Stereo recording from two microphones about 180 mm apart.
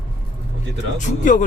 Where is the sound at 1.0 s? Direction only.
45° left (ahead or behind).